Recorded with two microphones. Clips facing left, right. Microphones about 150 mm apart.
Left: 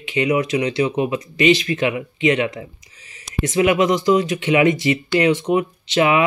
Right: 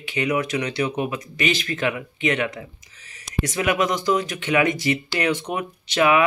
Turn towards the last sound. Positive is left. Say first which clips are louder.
# left 2 dB
turn(degrees=20)  # may be behind; listen again after turning